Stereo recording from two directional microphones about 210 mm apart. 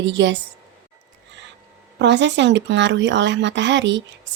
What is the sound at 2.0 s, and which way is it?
A woman's voice, 60° right (ahead or behind).